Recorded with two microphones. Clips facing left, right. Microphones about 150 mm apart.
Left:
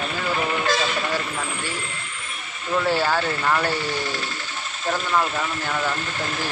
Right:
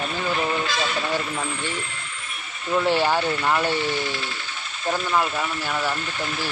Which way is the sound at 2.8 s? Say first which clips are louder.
Right 1 dB; 20° right (ahead or behind).